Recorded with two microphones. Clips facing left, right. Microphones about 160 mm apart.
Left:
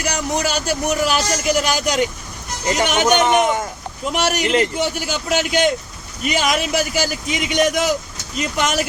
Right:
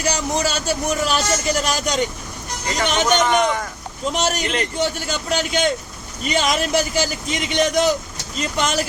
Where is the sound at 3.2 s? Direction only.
25° left (ahead or behind).